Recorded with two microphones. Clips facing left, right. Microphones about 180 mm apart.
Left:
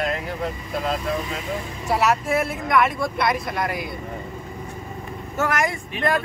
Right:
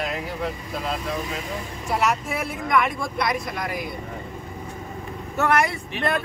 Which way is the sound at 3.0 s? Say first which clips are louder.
Left 3 dB; 60° left (ahead or behind).